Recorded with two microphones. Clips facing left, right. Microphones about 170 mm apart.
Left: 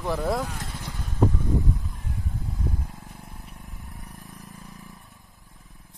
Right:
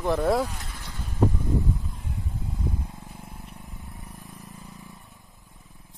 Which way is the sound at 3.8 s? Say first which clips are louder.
Even; 20° right (ahead or behind).